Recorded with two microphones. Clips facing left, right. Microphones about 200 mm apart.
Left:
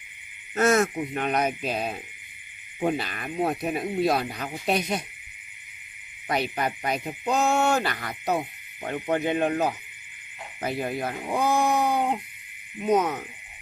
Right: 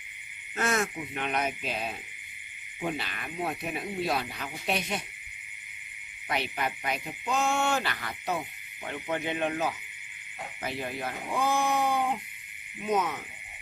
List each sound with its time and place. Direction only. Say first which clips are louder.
0.6 s speech: left 8 dB; 40° left (ahead or behind)
6.2 s speech: left 5 dB; 40° left (ahead or behind)